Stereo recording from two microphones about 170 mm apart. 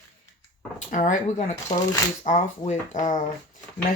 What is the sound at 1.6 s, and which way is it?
Speech, 20° left (ahead or behind).